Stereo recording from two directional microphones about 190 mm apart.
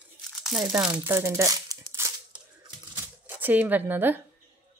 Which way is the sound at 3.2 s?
10° right (ahead or behind).